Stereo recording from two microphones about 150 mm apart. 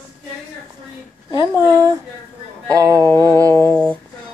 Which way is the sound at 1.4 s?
20° right (ahead or behind).